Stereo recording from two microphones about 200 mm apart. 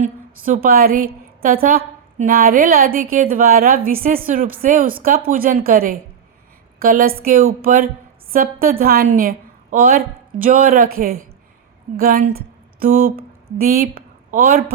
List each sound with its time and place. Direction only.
0.0 s a woman's voice: 40° right (ahead or behind)